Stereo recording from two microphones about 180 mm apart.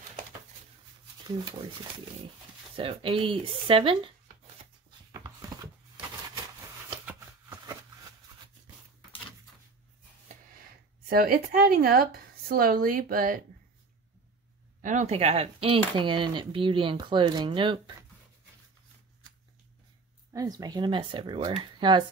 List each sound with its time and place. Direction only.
2.7 s speech: 30° right (ahead or behind)
5.9 s a sound: 15° right (ahead or behind)
7.1 s shuffling cards: 15° right (ahead or behind)
11.1 s speech: 55° right (ahead or behind)
14.8 s dishes: 45° right (ahead or behind); by 17.9 s 25° right (ahead or behind)
20.3 s dishes: 20° right (ahead or behind)